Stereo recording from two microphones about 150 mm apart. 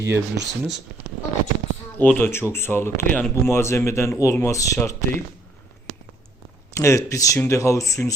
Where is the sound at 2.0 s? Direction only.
10° left (ahead or behind).